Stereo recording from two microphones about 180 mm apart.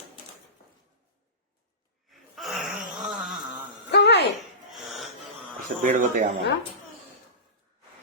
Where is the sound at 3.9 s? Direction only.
70° left (ahead or behind).